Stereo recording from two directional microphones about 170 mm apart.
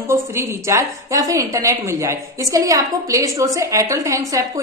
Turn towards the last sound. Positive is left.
turn(degrees=-20)  # may be behind; listen again after turning